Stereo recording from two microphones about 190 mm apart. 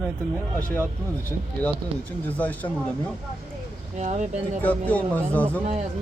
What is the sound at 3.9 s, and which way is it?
Speech, 40° right (ahead or behind).